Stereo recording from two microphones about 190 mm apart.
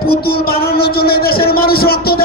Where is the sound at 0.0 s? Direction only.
55° left (ahead or behind).